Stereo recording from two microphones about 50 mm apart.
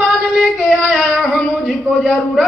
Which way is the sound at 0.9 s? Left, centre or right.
Centre.